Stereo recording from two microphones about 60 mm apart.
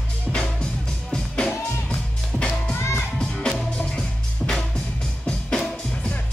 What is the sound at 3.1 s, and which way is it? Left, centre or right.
Music, centre.